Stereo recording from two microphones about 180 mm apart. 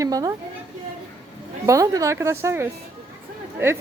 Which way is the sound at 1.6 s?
20° right (ahead or behind).